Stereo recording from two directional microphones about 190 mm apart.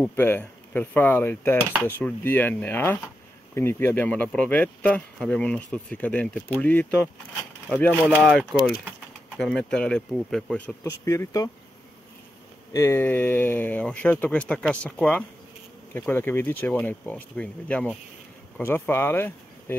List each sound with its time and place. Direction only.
0.1 s speech: 10° left (ahead or behind)
10.9 s speech: 20° left (ahead or behind)
12.7 s speech: 15° left (ahead or behind)